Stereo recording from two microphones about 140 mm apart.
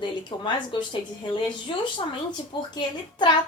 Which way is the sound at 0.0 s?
35° left (ahead or behind).